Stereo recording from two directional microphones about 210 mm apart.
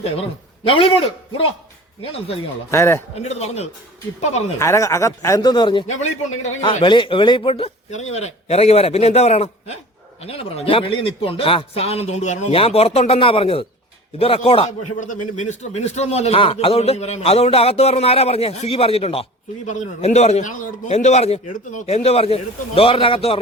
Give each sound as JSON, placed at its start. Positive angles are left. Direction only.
{"t": 0.2, "sound": "speech", "side_deg": 25}
{"t": 2.6, "sound": "speech", "side_deg": 15}
{"t": 3.2, "sound": "speech", "side_deg": 30}
{"t": 4.6, "sound": "speech", "side_deg": 15}